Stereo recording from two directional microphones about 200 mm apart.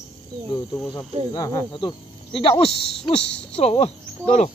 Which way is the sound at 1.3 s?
15° left (ahead or behind).